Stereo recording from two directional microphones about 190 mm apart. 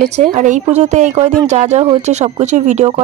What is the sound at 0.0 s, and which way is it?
A woman's voice, 40° right (ahead or behind).